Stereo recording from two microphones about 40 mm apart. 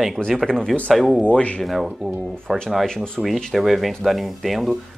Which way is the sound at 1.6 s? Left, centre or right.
Centre.